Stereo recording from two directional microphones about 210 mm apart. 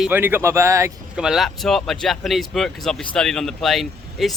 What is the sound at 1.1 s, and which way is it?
Speech, centre (ahead or behind).